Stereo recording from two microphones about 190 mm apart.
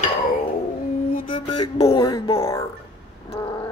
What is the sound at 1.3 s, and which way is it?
Music, 25° left (ahead or behind).